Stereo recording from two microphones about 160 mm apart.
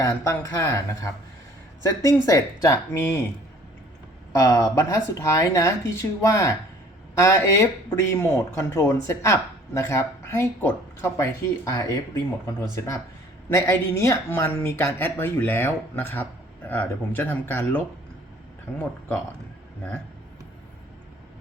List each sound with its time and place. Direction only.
0.3 s speech: 15° left (ahead or behind)
4.3 s speech: 20° left (ahead or behind)